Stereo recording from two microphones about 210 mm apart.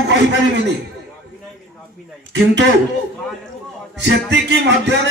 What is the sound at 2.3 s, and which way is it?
Speech, 55° right (ahead or behind).